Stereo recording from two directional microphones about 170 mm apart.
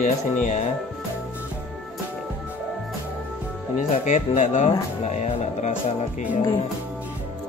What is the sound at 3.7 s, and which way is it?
Speech, 45° left (ahead or behind).